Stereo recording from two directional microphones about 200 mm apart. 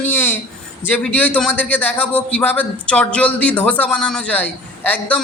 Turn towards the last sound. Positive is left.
turn(degrees=10)  # may be behind; listen again after turning